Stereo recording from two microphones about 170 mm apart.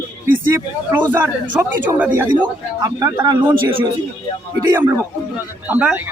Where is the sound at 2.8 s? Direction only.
20° right (ahead or behind).